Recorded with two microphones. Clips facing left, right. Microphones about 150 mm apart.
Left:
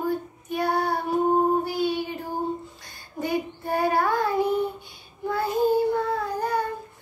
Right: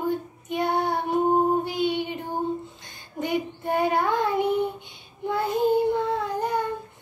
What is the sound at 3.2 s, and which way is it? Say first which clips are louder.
Child singing: even; 20° right (ahead or behind).